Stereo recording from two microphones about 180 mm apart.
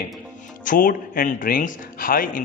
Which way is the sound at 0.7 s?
50° left (ahead or behind).